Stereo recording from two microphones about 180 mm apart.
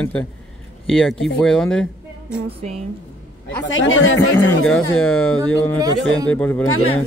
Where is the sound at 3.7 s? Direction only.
90° left.